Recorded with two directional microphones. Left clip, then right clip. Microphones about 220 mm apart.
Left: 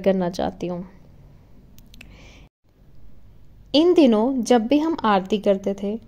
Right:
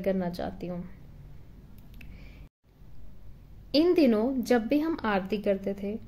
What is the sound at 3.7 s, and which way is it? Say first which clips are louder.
A woman's voice: left 7 dB; 30° left (ahead or behind).